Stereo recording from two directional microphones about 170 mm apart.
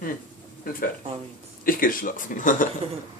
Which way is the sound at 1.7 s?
55° left (ahead or behind).